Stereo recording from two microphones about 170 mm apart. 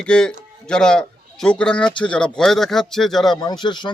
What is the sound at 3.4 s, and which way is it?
Speech, 25° left (ahead or behind).